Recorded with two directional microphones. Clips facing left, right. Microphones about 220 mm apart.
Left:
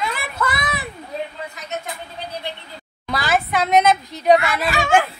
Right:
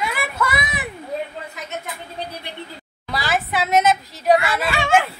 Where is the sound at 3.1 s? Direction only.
Centre (ahead or behind).